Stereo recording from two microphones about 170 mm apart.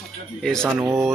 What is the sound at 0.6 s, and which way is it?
Speech, 15° right (ahead or behind).